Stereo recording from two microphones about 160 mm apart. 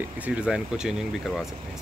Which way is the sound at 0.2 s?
5° right (ahead or behind).